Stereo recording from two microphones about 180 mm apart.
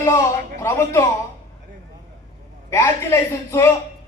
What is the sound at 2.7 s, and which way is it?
A man's voice, 15° left (ahead or behind).